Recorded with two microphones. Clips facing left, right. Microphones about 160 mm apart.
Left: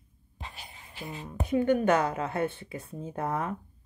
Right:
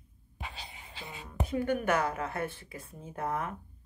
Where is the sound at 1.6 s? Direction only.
30° left (ahead or behind).